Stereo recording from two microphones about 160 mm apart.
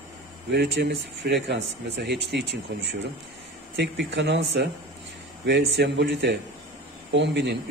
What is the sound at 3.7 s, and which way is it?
Speech, 90° right.